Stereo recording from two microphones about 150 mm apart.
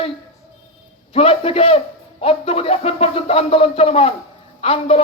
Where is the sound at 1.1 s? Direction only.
40° left (ahead or behind).